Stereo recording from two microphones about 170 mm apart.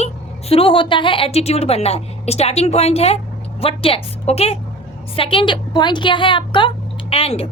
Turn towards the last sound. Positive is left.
turn(degrees=35)  # may be behind; listen again after turning